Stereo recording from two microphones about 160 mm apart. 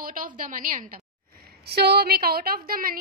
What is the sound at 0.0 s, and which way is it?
A woman's voice, 60° right (ahead or behind).